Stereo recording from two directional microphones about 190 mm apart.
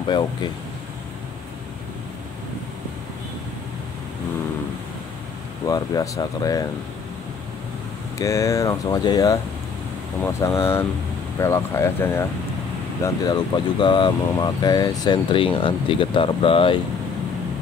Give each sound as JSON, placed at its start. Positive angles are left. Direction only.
{"t": 5.7, "sound": "speech", "side_deg": 20}
{"t": 8.2, "sound": "speech", "side_deg": 15}